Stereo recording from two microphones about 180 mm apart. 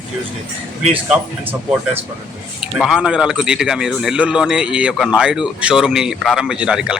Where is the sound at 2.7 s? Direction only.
Centre (ahead or behind).